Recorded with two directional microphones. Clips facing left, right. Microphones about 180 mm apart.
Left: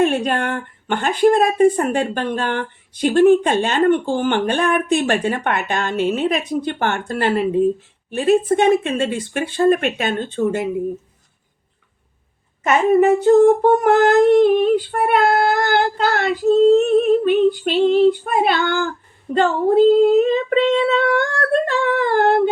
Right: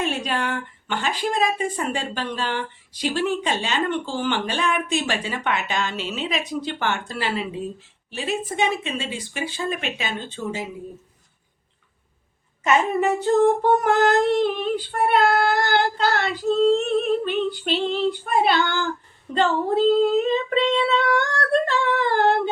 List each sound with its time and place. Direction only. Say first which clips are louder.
0.0 s speech: left 8 dB; 55° left (ahead or behind)
12.6 s child singing: left 6 dB; 50° left (ahead or behind)